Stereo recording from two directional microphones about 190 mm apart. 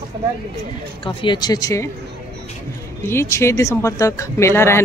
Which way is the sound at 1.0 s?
25° left (ahead or behind).